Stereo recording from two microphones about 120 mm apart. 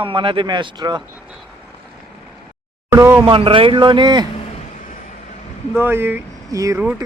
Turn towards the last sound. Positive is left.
turn(degrees=-30)  # may be behind; listen again after turning